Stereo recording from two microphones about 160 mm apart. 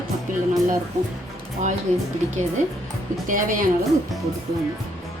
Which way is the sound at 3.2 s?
55° right (ahead or behind).